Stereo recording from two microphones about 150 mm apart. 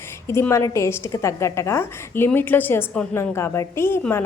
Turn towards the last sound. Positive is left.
turn(degrees=15)  # may be behind; listen again after turning